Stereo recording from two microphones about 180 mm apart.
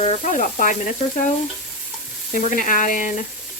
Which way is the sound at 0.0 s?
40° left (ahead or behind).